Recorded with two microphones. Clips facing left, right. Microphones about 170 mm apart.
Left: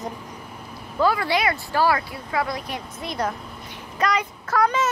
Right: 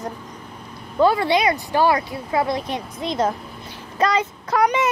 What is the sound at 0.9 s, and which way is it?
Speech, 25° right (ahead or behind).